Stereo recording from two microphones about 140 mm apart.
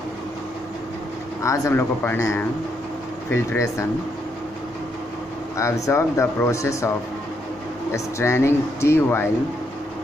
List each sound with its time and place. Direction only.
1.4 s speech: 20° left (ahead or behind)
5.6 s speech: 20° left (ahead or behind)
7.9 s speech: 20° left (ahead or behind)